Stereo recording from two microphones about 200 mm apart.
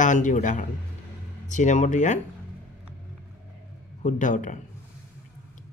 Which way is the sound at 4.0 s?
40° left (ahead or behind).